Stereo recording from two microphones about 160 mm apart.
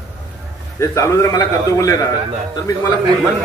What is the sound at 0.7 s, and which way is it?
A man's voice, 20° left (ahead or behind).